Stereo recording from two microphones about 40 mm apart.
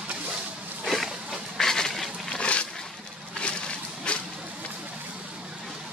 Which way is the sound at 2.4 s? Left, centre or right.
Left.